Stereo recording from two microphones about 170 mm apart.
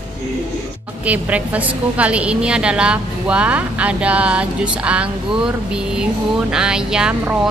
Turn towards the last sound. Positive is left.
turn(degrees=-5)  # may be behind; listen again after turning